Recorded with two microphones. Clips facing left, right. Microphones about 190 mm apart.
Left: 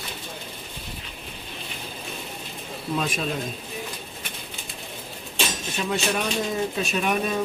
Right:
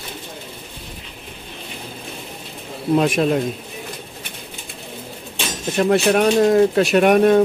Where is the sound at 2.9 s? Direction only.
65° right (ahead or behind).